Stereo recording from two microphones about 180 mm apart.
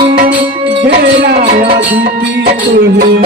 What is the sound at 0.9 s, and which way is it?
Music, 65° right (ahead or behind).